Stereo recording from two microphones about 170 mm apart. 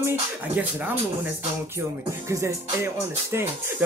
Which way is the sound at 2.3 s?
15° right (ahead or behind).